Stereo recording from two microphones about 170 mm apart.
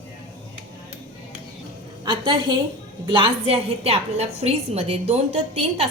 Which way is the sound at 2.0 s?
30° right (ahead or behind).